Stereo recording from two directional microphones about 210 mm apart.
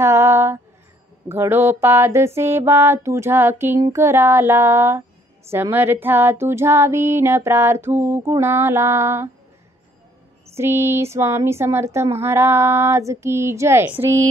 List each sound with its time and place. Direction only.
0.0 s a sound: 10° right (ahead or behind)
1.3 s female singing: 10° right (ahead or behind)
10.5 s female singing: 10° right (ahead or behind)